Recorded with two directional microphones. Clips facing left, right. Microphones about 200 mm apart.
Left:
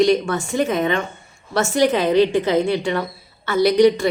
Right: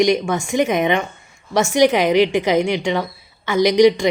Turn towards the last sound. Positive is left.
turn(degrees=-15)  # may be behind; listen again after turning